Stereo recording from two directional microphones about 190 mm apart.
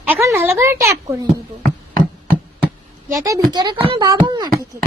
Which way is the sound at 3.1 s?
20° right (ahead or behind).